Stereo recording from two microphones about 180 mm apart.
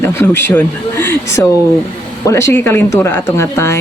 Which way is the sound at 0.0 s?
15° left (ahead or behind).